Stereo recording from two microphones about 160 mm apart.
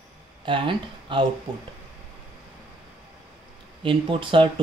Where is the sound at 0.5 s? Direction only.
30° right (ahead or behind).